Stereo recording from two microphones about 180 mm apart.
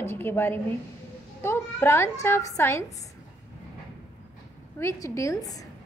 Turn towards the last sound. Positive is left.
turn(degrees=20)  # may be behind; listen again after turning